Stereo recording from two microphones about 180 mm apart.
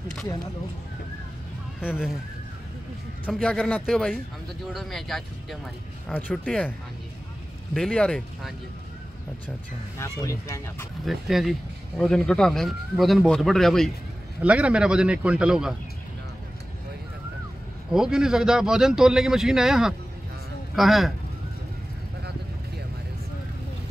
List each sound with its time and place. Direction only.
3.3 s a man's voice: 5° left (ahead or behind)
7.7 s a man's voice: 5° left (ahead or behind)
9.9 s speech: 15° left (ahead or behind)
11.1 s a man's voice: centre (ahead or behind)
17.9 s a man's voice: 5° right (ahead or behind)